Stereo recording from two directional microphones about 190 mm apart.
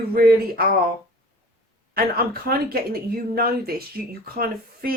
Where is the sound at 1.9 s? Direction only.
55° right (ahead or behind).